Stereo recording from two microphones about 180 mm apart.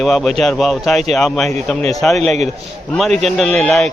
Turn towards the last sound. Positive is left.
turn(degrees=0)  # may be behind; listen again after turning